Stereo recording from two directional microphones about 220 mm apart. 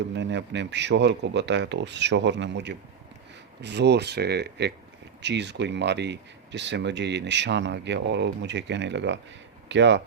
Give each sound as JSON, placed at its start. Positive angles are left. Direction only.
{"t": 0.1, "sound": "speech", "side_deg": -55}